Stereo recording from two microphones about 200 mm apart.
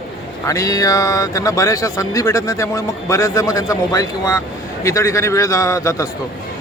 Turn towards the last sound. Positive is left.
turn(degrees=15)  # may be behind; listen again after turning